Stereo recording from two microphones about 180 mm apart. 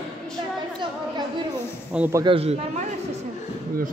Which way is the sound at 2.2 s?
30° right (ahead or behind).